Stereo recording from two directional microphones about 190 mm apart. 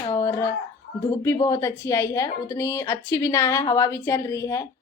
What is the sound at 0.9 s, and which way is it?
A woman's voice, 15° left (ahead or behind).